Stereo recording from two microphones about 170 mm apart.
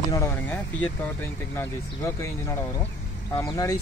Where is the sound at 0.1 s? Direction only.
20° left (ahead or behind).